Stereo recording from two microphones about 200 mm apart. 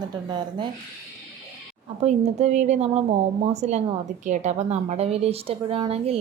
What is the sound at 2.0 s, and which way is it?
A woman's voice, 35° right (ahead or behind).